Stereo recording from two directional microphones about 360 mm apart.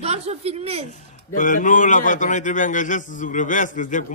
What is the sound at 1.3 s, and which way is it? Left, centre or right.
A man's voice, left.